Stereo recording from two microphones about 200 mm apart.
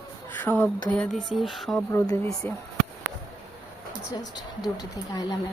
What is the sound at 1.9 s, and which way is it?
Speech, 15° left (ahead or behind).